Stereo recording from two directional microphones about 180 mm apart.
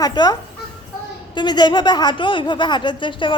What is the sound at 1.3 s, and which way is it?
Speech, 25° left (ahead or behind).